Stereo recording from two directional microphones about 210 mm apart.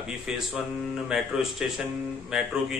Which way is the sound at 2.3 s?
5° right (ahead or behind).